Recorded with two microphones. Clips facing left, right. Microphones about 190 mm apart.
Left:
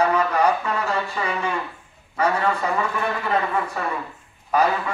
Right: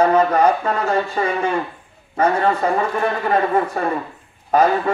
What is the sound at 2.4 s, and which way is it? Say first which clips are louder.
A man's voice: right 5 dB; 40° right (ahead or behind).